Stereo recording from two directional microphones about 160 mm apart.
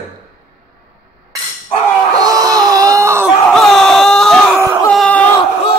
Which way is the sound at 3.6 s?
Centre (ahead or behind).